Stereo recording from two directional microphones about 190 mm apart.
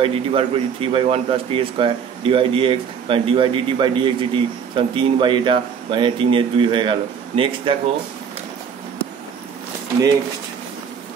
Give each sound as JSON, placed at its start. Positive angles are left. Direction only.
{"t": 0.0, "sound": "speech", "side_deg": -30}